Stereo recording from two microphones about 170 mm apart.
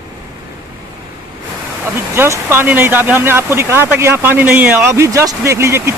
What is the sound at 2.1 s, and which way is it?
Speech, 15° right (ahead or behind).